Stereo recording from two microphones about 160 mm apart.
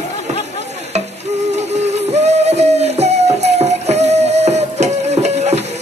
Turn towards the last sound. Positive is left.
turn(degrees=-45)  # may be behind; listen again after turning